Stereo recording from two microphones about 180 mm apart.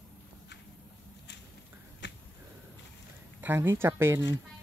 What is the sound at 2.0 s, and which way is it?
Finger snapping, 75° left (ahead or behind).